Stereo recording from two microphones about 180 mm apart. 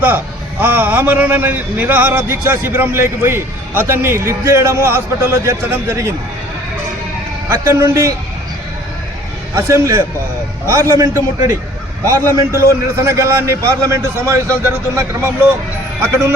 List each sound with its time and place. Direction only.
0.6 s a man's voice: 10° right (ahead or behind)
7.5 s a man's voice: 15° right (ahead or behind)
9.6 s a man's voice: 15° right (ahead or behind)